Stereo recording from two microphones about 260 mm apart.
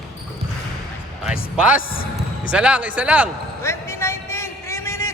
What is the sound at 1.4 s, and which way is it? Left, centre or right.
Speech, left.